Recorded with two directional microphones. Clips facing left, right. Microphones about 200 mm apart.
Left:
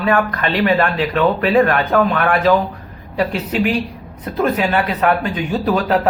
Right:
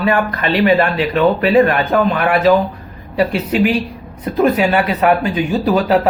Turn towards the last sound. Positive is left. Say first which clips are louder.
# right 3 dB
turn(degrees=-10)  # may be behind; listen again after turning